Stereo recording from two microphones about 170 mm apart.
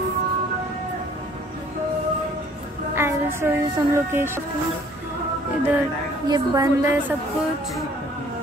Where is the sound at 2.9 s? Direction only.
15° right (ahead or behind).